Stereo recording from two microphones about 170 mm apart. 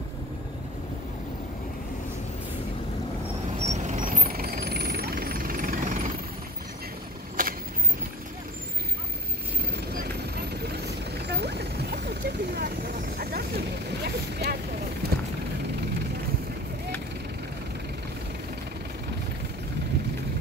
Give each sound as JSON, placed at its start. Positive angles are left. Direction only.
{"t": 3.6, "sound": "vehicle", "side_deg": -45}
{"t": 7.4, "sound": "vehicle", "side_deg": -55}
{"t": 10.6, "sound": "vehicle", "side_deg": -75}